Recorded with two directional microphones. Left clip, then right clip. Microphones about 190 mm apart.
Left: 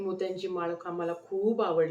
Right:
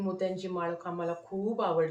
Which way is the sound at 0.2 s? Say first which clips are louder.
Even; 10° left (ahead or behind).